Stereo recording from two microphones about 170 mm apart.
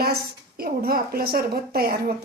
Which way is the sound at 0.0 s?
60° right (ahead or behind).